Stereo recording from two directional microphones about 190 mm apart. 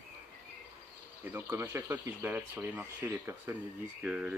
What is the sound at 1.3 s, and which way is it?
Speech, 10° right (ahead or behind).